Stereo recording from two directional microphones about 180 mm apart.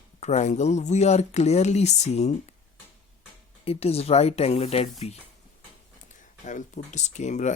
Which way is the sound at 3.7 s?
35° left (ahead or behind).